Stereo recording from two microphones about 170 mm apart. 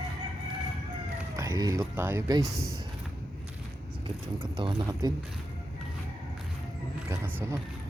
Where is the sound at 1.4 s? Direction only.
20° right (ahead or behind).